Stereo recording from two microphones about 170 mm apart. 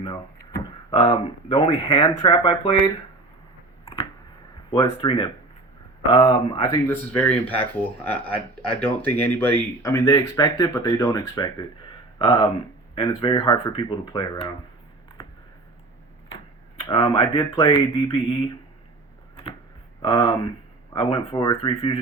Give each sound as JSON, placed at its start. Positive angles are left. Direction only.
{"t": 0.0, "sound": "a sound", "side_deg": 25}
{"t": 1.0, "sound": "speech", "side_deg": 30}
{"t": 4.7, "sound": "speech", "side_deg": 30}
{"t": 6.3, "sound": "speech", "side_deg": 20}
{"t": 16.9, "sound": "speech", "side_deg": 30}
{"t": 18.1, "sound": "speech", "side_deg": 30}
{"t": 20.0, "sound": "speech", "side_deg": 20}